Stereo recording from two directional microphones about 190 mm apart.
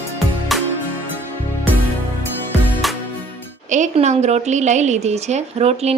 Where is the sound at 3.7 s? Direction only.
40° right (ahead or behind).